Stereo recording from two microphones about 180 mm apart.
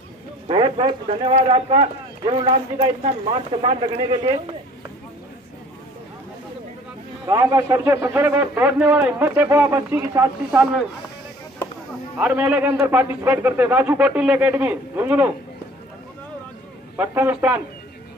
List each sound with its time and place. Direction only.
0.5 s speech: 30° right (ahead or behind)
7.2 s a man's voice: 15° right (ahead or behind)
12.2 s a man's voice: 10° right (ahead or behind)
16.9 s a man's voice: 10° right (ahead or behind)